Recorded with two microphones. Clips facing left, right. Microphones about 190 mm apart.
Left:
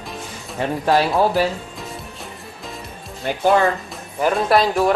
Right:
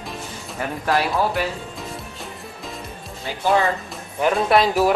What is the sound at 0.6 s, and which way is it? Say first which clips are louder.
Speech: left 4 dB; 30° left (ahead or behind).